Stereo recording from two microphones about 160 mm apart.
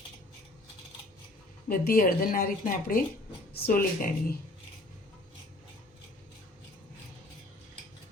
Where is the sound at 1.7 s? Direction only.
65° left (ahead or behind).